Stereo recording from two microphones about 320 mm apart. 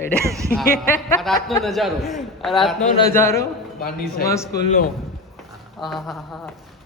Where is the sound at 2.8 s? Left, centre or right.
Left.